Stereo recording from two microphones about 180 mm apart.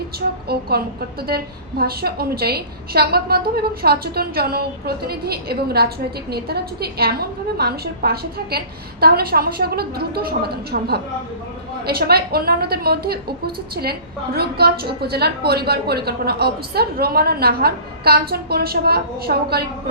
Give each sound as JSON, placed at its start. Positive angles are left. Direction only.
{"t": 0.2, "sound": "a woman's voice", "side_deg": -60}
{"t": 1.8, "sound": "a woman's voice", "side_deg": -60}
{"t": 14.3, "sound": "a woman's voice", "side_deg": -60}